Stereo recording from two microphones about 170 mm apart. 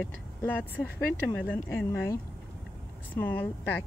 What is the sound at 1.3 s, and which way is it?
Speech, 10° left (ahead or behind).